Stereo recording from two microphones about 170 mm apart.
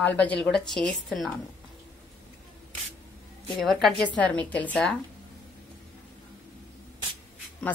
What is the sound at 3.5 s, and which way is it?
A woman's voice, centre (ahead or behind).